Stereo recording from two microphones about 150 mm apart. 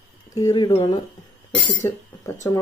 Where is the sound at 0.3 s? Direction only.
25° left (ahead or behind).